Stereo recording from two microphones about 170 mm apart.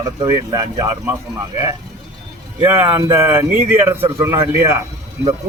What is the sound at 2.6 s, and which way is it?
A man's voice, 20° right (ahead or behind).